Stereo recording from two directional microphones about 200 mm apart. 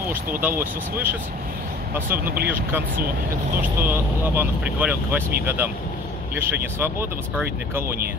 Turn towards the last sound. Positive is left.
turn(degrees=-10)  # may be behind; listen again after turning